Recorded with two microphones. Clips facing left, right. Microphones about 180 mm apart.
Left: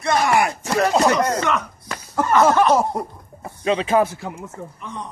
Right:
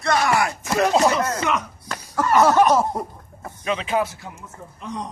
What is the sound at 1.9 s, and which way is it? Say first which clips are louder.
Cough: left 1 dB; 20° left (ahead or behind).